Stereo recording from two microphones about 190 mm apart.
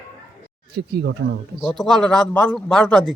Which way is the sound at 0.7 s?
60° right (ahead or behind).